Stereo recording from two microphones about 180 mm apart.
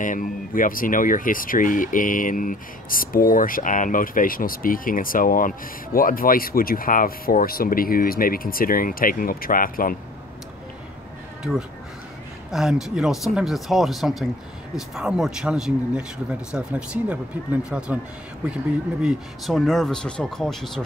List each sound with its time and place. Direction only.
0.0 s speech: 50° left (ahead or behind)
12.4 s speech: centre (ahead or behind)